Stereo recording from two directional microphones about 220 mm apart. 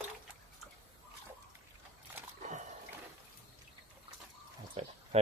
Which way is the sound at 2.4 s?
35° right (ahead or behind).